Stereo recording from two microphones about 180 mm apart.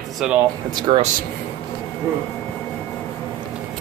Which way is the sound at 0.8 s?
25° right (ahead or behind).